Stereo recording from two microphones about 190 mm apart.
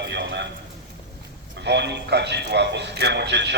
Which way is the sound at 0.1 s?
65° right (ahead or behind).